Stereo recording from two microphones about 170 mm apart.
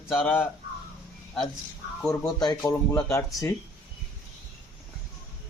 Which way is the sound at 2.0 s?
25° left (ahead or behind).